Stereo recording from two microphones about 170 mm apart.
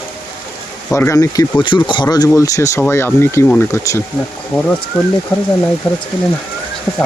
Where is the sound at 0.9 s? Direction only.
15° left (ahead or behind).